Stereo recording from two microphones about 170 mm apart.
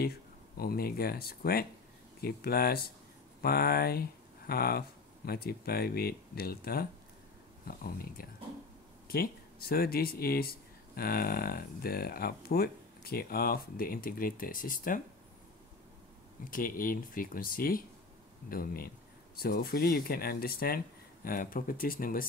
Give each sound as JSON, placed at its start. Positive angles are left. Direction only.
{"t": 0.6, "sound": "speech", "side_deg": 65}
{"t": 16.4, "sound": "speech", "side_deg": 55}